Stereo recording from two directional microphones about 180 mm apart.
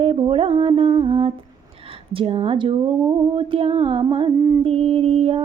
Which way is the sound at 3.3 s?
30° right (ahead or behind).